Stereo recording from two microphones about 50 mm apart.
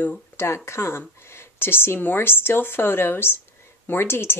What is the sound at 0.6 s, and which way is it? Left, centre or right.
Speech, left.